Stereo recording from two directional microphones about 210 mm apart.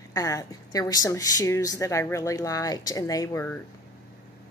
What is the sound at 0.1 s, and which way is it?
Speech, 15° left (ahead or behind).